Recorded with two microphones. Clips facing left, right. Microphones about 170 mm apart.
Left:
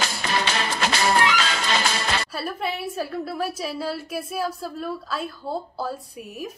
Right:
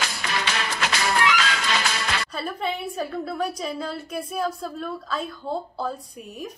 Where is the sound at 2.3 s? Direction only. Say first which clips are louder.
Even; 5° left (ahead or behind).